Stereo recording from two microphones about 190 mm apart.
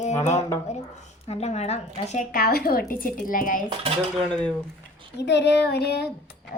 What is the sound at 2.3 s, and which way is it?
A woman's voice, 55° left (ahead or behind).